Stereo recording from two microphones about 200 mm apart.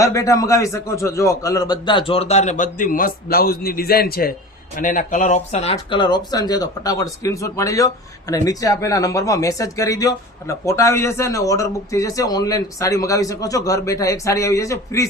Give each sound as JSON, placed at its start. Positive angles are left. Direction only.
{"t": 0.0, "sound": "a man's voice", "side_deg": 15}